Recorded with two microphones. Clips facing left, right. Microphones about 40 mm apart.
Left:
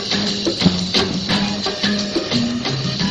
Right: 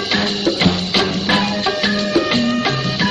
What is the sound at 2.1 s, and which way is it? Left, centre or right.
Music, right.